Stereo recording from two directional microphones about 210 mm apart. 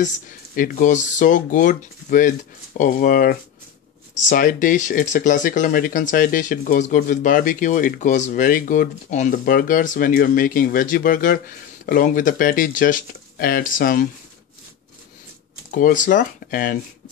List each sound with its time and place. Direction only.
0.0 s speech: 40° left (ahead or behind)
15.7 s speech: 40° left (ahead or behind)